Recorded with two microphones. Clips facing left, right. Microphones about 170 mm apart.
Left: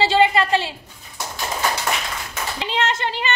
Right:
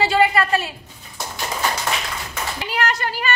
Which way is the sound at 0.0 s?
25° left (ahead or behind).